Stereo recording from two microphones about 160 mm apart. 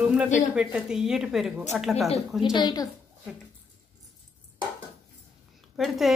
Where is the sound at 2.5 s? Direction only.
25° left (ahead or behind).